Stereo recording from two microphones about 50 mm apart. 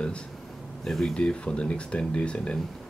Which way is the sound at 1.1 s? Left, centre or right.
Centre.